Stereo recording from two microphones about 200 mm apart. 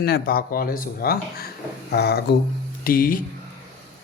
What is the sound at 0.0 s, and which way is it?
Speech, 50° left (ahead or behind).